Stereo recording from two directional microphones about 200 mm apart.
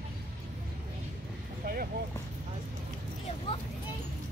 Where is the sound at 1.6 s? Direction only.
45° right (ahead or behind).